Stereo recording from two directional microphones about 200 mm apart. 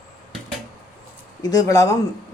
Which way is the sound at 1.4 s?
20° left (ahead or behind).